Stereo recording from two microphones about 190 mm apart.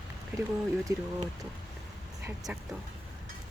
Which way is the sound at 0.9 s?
15° right (ahead or behind).